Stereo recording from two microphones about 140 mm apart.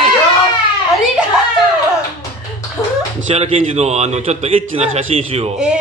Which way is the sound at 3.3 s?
50° right (ahead or behind).